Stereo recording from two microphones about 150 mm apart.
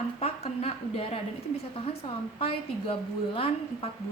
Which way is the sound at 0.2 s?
40° left (ahead or behind).